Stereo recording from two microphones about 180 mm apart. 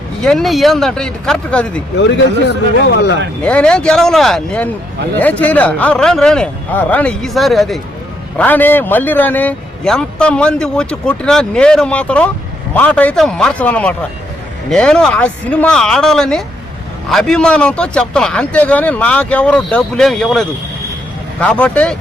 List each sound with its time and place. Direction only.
0.2 s speech: 5° left (ahead or behind)
2.0 s speech: 80° left
3.4 s a man's voice: 5° left (ahead or behind)